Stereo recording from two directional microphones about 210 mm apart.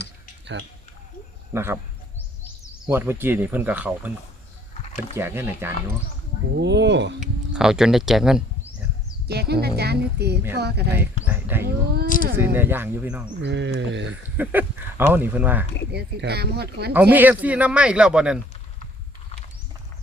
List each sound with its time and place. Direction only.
1.5 s speech: 10° right (ahead or behind)
2.8 s speech: 10° right (ahead or behind)
5.1 s speech: 10° right (ahead or behind)
6.6 s a sound: 55° right (ahead or behind)
7.5 s a man's voice: 5° right (ahead or behind)
9.2 s speech: 50° right (ahead or behind)
10.9 s speech: 10° right (ahead or behind)
12.0 s speech: 40° left (ahead or behind)
12.5 s speech: 10° right (ahead or behind)
13.4 s a sound: 55° right (ahead or behind)
14.3 s speech: 10° right (ahead or behind)
15.9 s speech: 50° right (ahead or behind)
16.9 s a man's voice: 10° right (ahead or behind)